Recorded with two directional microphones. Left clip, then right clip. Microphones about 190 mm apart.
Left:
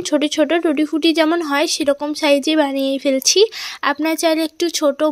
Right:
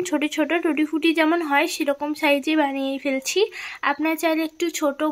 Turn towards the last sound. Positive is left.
turn(degrees=40)  # may be behind; listen again after turning